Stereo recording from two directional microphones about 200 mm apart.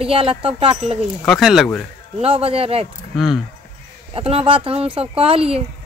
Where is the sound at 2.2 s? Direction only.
30° right (ahead or behind).